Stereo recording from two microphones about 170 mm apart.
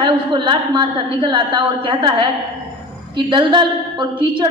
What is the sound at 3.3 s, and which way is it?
A woman's voice, 30° right (ahead or behind).